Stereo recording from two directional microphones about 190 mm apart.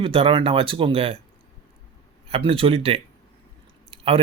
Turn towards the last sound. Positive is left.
turn(degrees=-30)  # may be behind; listen again after turning